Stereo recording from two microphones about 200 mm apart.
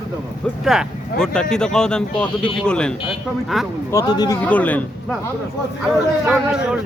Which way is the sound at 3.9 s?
20° left (ahead or behind).